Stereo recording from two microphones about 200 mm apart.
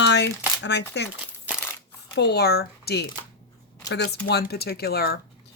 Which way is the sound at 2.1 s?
55° left (ahead or behind).